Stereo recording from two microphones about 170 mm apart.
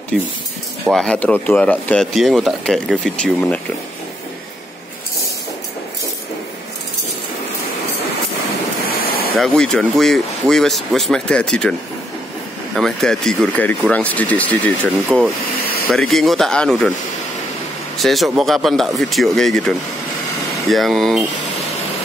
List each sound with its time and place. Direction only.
0.9 s speech: 5° left (ahead or behind)
9.0 s a sound: 65° left (ahead or behind)
9.4 s speech: 5° left (ahead or behind)
12.7 s speech: centre (ahead or behind)
17.9 s speech: centre (ahead or behind)
20.7 s speech: centre (ahead or behind)